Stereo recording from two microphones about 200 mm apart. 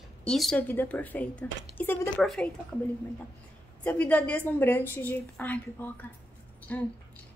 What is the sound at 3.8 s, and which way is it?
A woman's voice, 10° left (ahead or behind).